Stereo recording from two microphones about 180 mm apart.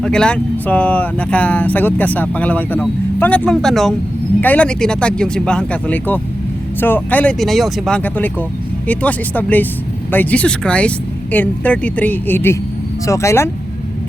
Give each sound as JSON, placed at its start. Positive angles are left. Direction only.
{"t": 0.0, "sound": "speech", "side_deg": 5}